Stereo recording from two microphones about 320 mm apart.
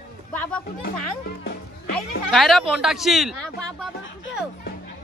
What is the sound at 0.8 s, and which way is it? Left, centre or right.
Speech, left.